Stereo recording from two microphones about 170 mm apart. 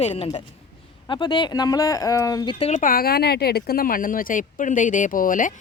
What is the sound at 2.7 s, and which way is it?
Speech, 50° left (ahead or behind).